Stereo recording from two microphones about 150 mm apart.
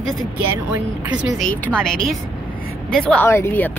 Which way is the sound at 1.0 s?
Centre (ahead or behind).